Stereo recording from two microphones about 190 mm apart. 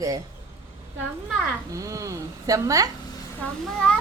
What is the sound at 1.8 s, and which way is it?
Speech, 15° right (ahead or behind).